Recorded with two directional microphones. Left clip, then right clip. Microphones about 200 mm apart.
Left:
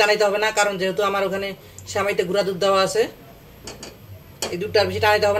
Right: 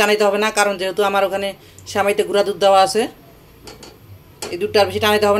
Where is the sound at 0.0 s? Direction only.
45° right (ahead or behind).